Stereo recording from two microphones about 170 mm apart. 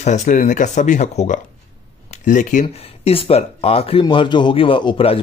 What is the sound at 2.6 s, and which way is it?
Speech, 35° left (ahead or behind).